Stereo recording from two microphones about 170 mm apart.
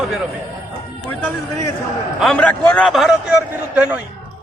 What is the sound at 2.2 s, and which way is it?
A man's voice, 10° left (ahead or behind).